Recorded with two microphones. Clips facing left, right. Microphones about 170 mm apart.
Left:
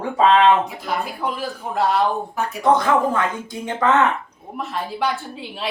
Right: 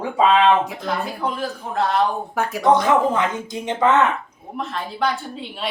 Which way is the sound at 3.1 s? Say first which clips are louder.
Right 1 dB; 20° right (ahead or behind).